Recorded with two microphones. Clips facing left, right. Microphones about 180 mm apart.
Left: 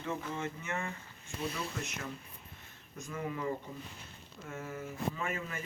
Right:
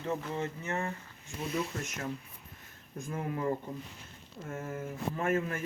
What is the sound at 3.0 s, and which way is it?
Speech, 50° right (ahead or behind).